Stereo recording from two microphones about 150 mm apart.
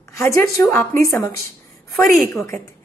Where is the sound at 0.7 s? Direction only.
20° left (ahead or behind).